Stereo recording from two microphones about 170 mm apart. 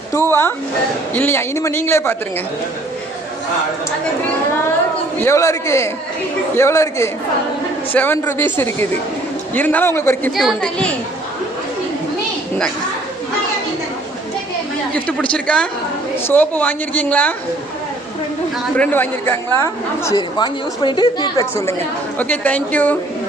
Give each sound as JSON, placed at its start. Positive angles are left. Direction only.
{"t": 0.1, "sound": "a woman's voice", "side_deg": 15}
{"t": 5.2, "sound": "a woman's voice", "side_deg": 15}
{"t": 10.3, "sound": "a woman's voice", "side_deg": 0}
{"t": 14.9, "sound": "a woman's voice", "side_deg": 10}
{"t": 18.8, "sound": "a woman's voice", "side_deg": 10}
{"t": 22.2, "sound": "a woman's voice", "side_deg": 10}